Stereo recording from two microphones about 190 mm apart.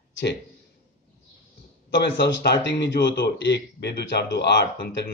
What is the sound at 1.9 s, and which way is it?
Speech, 65° left (ahead or behind).